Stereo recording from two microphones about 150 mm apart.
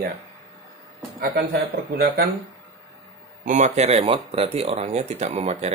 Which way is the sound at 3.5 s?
50° right (ahead or behind).